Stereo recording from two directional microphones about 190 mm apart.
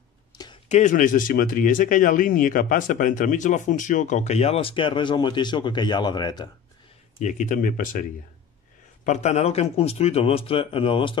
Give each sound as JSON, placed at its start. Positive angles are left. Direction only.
{"t": 0.7, "sound": "speech", "side_deg": 40}
{"t": 7.2, "sound": "speech", "side_deg": 40}